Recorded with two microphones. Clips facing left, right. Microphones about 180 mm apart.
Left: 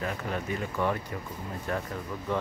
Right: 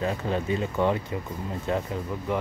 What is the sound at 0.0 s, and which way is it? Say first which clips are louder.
Speech: right 5 dB; 25° right (ahead or behind).